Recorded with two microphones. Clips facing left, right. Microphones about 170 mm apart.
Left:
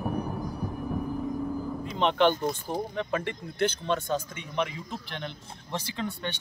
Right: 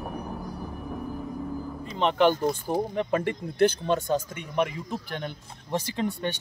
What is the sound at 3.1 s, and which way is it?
Speech, 40° right (ahead or behind).